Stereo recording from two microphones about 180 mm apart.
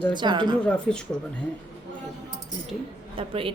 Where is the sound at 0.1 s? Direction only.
25° right (ahead or behind).